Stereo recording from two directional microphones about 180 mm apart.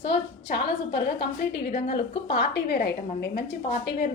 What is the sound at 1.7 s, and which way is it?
Speech, 35° left (ahead or behind).